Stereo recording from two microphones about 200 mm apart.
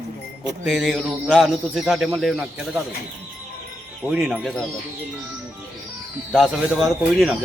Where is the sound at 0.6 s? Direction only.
Centre (ahead or behind).